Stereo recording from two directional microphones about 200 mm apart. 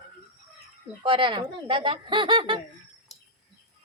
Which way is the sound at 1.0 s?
25° right (ahead or behind).